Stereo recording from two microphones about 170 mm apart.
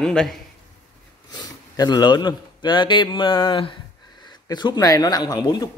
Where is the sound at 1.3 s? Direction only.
25° left (ahead or behind).